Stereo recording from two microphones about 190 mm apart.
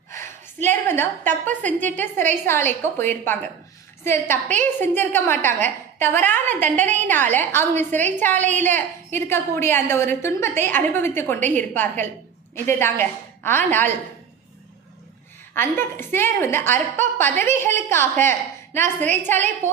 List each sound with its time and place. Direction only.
0.1 s a sound: 15° left (ahead or behind)
1.5 s a woman's voice: 10° left (ahead or behind)
8.4 s a woman's voice: 40° right (ahead or behind)
8.6 s a woman's voice: 10° left (ahead or behind)
15.5 s a woman's voice: 10° left (ahead or behind)